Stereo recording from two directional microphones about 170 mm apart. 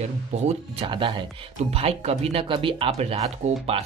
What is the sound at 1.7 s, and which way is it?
Speech, 35° right (ahead or behind).